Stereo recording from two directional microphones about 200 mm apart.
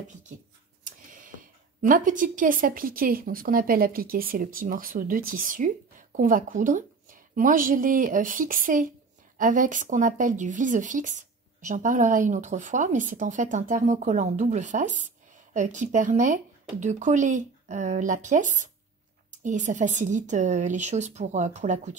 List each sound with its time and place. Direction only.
0.8 s a woman's voice: 40° right (ahead or behind)